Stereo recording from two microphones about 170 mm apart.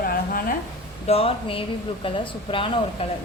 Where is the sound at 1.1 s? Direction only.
35° left (ahead or behind).